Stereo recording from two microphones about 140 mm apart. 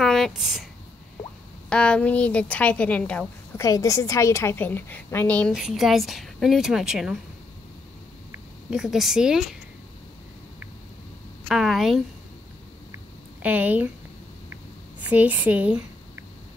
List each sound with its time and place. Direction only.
0.0 s a sound: centre (ahead or behind)
1.7 s speech: 5° left (ahead or behind)
3.5 s a woman's voice: 25° left (ahead or behind)
5.5 s a woman's voice: 5° right (ahead or behind)
8.6 s a woman's voice: 5° right (ahead or behind)
11.4 s a woman's voice: centre (ahead or behind)
13.4 s speech: 10° right (ahead or behind)
15.0 s speech: 10° right (ahead or behind)